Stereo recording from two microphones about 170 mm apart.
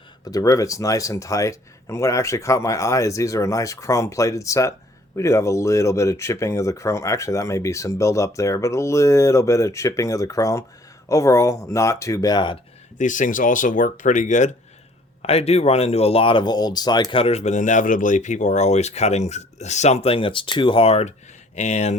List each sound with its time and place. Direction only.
0.3 s speech: 20° left (ahead or behind)
13.0 s speech: 50° left (ahead or behind)